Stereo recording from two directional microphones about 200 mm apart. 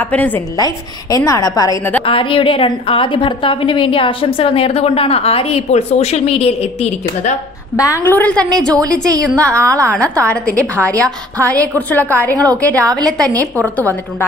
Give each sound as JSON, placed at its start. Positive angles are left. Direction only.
{"t": 0.1, "sound": "a woman's voice", "side_deg": 5}
{"t": 7.7, "sound": "a woman's voice", "side_deg": 15}